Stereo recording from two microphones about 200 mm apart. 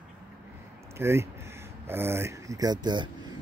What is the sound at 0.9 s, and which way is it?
Speech, 10° right (ahead or behind).